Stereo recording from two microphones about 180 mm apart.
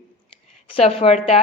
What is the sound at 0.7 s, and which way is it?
Speech, 30° left (ahead or behind).